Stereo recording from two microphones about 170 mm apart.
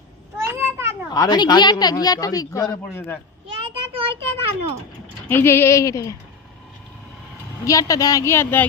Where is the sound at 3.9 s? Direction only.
30° right (ahead or behind).